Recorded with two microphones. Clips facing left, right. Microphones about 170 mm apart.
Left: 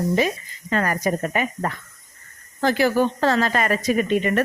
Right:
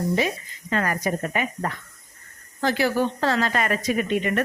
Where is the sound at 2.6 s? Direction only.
50° left (ahead or behind).